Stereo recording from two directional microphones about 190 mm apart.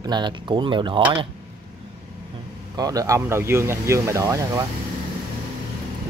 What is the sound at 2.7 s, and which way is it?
Speech, 20° right (ahead or behind).